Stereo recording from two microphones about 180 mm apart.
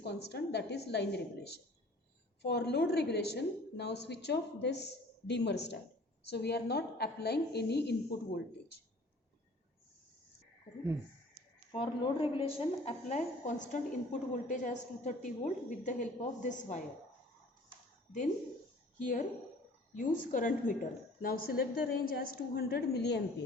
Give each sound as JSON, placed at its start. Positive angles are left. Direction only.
{"t": 0.0, "sound": "a woman's voice", "side_deg": 65}
{"t": 2.4, "sound": "a woman's voice", "side_deg": 65}
{"t": 11.7, "sound": "a woman's voice", "side_deg": 30}
{"t": 20.0, "sound": "a woman's voice", "side_deg": 50}